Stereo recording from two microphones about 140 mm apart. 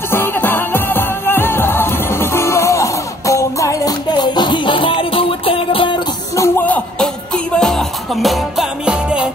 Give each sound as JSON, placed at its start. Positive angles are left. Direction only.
{"t": 0.1, "sound": "music", "side_deg": 15}
{"t": 6.3, "sound": "a sound", "side_deg": 15}
{"t": 7.5, "sound": "music", "side_deg": 5}